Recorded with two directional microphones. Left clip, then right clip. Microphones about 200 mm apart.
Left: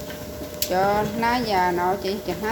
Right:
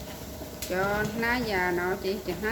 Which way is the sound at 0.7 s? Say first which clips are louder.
Left 7 dB; 5° right (ahead or behind).